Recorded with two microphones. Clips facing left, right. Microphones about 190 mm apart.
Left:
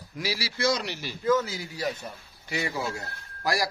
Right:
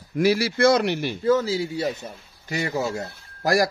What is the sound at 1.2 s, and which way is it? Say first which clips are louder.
Speech: right 4 dB; 30° right (ahead or behind).